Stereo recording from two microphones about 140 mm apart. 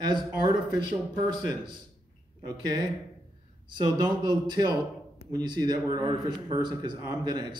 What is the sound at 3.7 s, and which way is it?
A man's voice, 30° right (ahead or behind).